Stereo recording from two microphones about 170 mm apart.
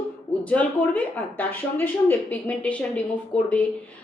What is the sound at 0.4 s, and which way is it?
A woman's voice, 10° left (ahead or behind).